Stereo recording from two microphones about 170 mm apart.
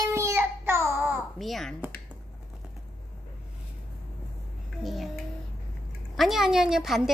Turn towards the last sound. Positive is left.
turn(degrees=0)  # may be behind; listen again after turning